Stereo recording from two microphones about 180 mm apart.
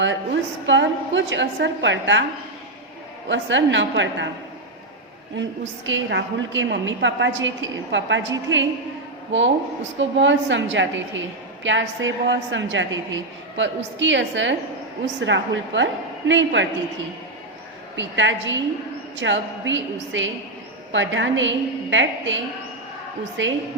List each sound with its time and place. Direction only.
0.7 s a woman's voice: 90° right
3.2 s a woman's voice: 90° right
5.4 s a woman's voice: 90° right
10.0 s a woman's voice: 90° right
17.9 s a woman's voice: 90° right
23.4 s a woman's voice: 90° right